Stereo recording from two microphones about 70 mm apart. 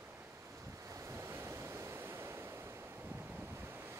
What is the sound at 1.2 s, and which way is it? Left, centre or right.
Waves, right.